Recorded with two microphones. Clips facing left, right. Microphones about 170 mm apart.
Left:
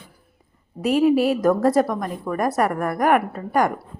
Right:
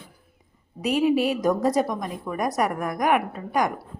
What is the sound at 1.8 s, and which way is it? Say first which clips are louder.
Speech: left 3 dB; 60° left (ahead or behind).